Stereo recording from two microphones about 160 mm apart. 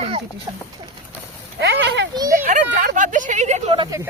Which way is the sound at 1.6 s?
90° right.